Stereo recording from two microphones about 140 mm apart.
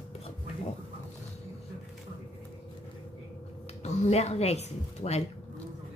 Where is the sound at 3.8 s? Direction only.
50° left (ahead or behind).